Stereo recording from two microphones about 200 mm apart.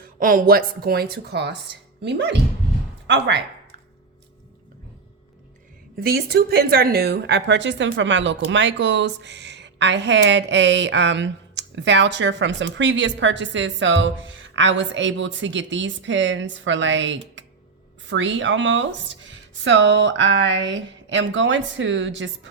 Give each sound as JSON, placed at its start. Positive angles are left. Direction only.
{"t": 0.0, "sound": "a woman's voice", "side_deg": -40}
{"t": 6.0, "sound": "a woman's voice", "side_deg": -50}